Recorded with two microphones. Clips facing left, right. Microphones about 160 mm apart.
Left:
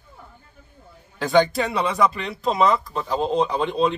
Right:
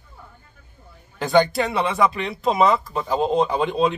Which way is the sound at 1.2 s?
Centre (ahead or behind).